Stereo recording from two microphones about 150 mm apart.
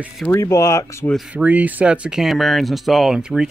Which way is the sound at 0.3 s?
20° left (ahead or behind).